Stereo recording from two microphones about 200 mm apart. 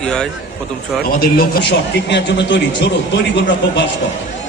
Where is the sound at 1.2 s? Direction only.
55° left (ahead or behind).